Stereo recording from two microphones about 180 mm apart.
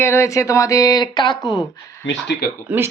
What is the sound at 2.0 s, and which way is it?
Speech, 70° left (ahead or behind).